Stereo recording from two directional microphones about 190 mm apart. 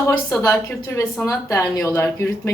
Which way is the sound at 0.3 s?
15° left (ahead or behind).